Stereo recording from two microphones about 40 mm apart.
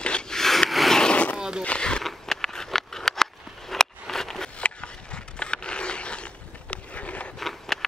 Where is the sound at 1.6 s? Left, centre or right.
Left.